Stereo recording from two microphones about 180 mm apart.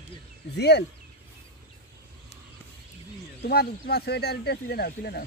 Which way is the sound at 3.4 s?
60° left (ahead or behind).